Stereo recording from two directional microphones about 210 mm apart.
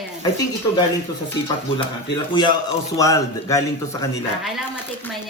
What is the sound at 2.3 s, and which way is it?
A man's voice, 20° left (ahead or behind).